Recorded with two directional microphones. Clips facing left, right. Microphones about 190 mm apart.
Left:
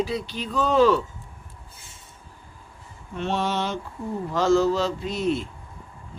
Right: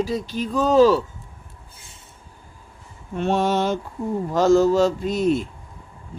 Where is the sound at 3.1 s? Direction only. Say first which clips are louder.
Right 5 dB; 45° right (ahead or behind).